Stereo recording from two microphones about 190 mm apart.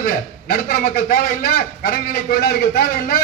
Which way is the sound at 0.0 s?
50° left (ahead or behind).